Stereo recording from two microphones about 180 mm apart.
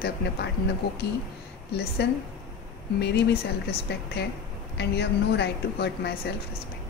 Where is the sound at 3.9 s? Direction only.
70° left (ahead or behind).